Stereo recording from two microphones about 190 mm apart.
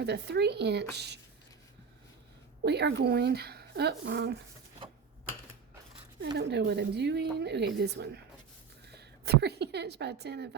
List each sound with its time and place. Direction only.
0.0 s speech: 60° right (ahead or behind)
2.6 s speech: 60° right (ahead or behind)
6.3 s a woman's voice: 60° right (ahead or behind)